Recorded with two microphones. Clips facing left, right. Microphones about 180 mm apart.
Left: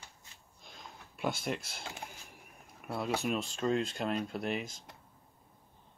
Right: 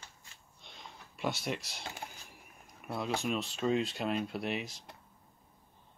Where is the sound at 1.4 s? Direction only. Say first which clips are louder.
Left 1 dB; centre (ahead or behind).